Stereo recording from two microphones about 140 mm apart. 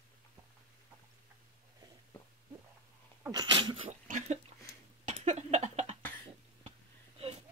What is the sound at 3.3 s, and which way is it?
Sneeze, 35° right (ahead or behind).